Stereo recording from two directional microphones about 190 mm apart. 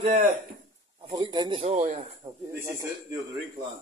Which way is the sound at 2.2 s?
15° right (ahead or behind).